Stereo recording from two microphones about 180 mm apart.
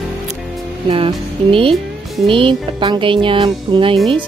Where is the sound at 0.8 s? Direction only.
30° right (ahead or behind).